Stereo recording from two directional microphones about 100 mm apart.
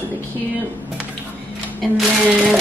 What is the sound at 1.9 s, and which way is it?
Speech, 5° right (ahead or behind).